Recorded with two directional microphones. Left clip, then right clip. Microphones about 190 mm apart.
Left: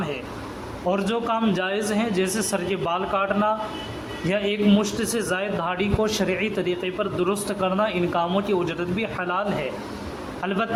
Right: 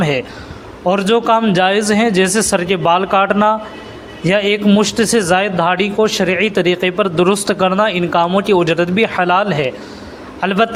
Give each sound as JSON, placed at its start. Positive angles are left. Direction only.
{"t": 0.9, "sound": "a man's voice", "side_deg": -40}